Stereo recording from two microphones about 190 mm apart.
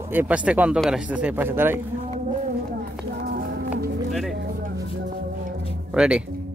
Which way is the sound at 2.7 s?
55° right (ahead or behind).